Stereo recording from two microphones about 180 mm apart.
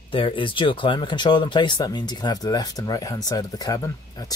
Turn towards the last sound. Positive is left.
turn(degrees=20)  # may be behind; listen again after turning